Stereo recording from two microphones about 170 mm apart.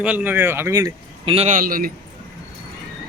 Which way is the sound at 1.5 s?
55° right (ahead or behind).